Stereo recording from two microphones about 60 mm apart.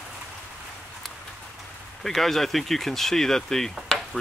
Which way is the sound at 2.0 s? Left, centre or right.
Centre.